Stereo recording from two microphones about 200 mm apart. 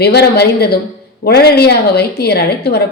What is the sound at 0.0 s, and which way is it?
A woman's voice, 55° left (ahead or behind).